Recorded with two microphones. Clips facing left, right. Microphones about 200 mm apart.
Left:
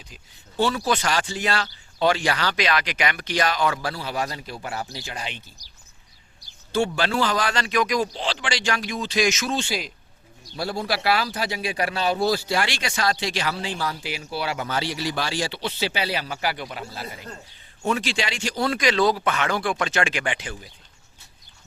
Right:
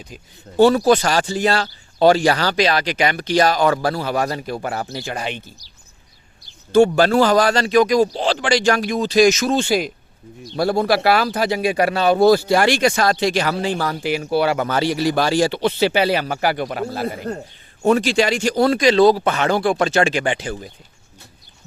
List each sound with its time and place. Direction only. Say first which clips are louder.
0.1 s speech: right 10 dB; 45° right (ahead or behind)
6.7 s speech: right 10 dB; 45° right (ahead or behind)
17.8 s speech: right 9 dB; 40° right (ahead or behind)
18.8 s speech: right 7 dB; 30° right (ahead or behind)